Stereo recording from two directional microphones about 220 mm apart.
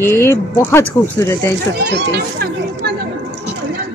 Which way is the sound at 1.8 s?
50° right (ahead or behind).